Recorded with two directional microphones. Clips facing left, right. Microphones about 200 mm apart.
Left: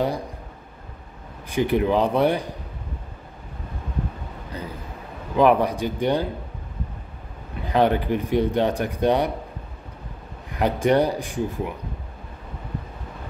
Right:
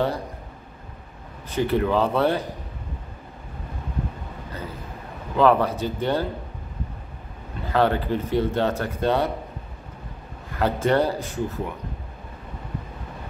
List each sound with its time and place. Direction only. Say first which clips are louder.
1.5 s speech: left 1 dB; 15° left (ahead or behind)
5.4 s speech: left 1 dB; 15° left (ahead or behind)
7.6 s speech: left 2 dB; 15° left (ahead or behind)
10.5 s speech: left 2 dB; 15° left (ahead or behind)